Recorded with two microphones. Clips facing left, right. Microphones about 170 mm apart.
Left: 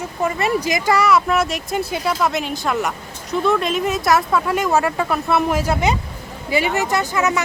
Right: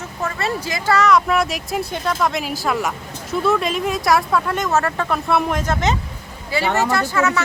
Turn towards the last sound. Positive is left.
turn(degrees=15)  # may be behind; listen again after turning